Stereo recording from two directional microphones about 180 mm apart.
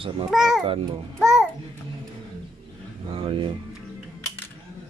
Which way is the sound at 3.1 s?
30° right (ahead or behind).